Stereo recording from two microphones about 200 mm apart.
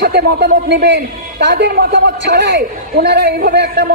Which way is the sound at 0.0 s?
50° right (ahead or behind).